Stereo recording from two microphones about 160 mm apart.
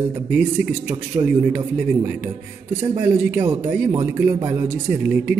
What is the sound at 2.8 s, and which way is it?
A man's voice, 15° right (ahead or behind).